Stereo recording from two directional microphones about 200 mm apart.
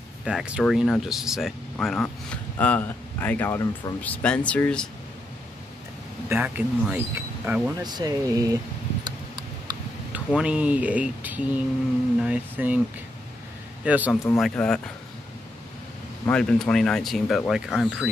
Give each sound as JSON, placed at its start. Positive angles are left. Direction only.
{"t": 0.2, "sound": "speech", "side_deg": -5}
{"t": 6.2, "sound": "speech", "side_deg": -10}
{"t": 7.8, "sound": "speech", "side_deg": -20}
{"t": 10.1, "sound": "speech", "side_deg": -5}
{"t": 13.8, "sound": "speech", "side_deg": -5}
{"t": 14.4, "sound": "speech", "side_deg": 5}
{"t": 16.3, "sound": "speech", "side_deg": 5}